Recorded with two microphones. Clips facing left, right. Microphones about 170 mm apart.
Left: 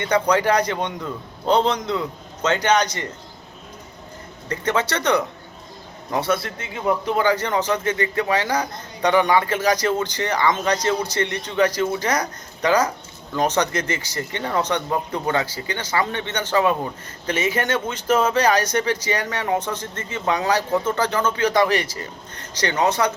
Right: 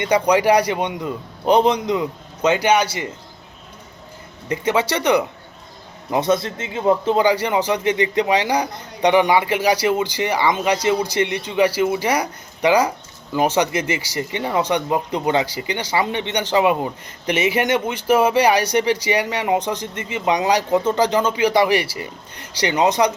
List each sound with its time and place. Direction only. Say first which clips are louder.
0.0 s speech: right 3 dB; 15° right (ahead or behind)
4.4 s a man's voice: right 3 dB; 10° right (ahead or behind)
7.3 s speech: right 2 dB; 15° right (ahead or behind)